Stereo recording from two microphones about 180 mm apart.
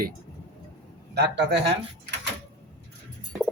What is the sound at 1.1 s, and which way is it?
Speech, 70° right (ahead or behind).